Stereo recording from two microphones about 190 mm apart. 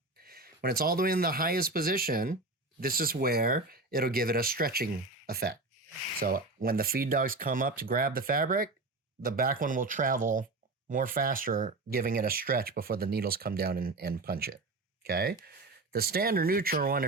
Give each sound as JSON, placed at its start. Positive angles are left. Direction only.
{"t": 0.2, "sound": "speech", "side_deg": -50}